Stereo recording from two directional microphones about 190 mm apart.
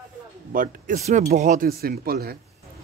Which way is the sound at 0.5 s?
45° right (ahead or behind).